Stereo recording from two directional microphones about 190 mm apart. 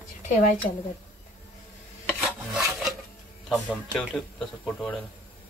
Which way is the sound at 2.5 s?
Centre (ahead or behind).